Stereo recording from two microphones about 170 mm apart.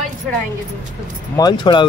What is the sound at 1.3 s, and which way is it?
Speech, 25° left (ahead or behind).